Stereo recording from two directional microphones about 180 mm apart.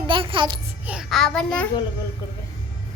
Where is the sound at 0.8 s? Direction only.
5° right (ahead or behind).